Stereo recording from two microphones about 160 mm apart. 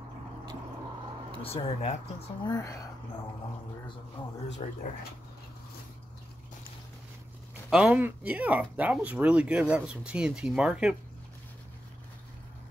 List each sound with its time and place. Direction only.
1.4 s speech: 35° left (ahead or behind)
2.4 s speech: 20° left (ahead or behind)
4.6 s speech: 40° left (ahead or behind)
7.7 s speech: 10° right (ahead or behind)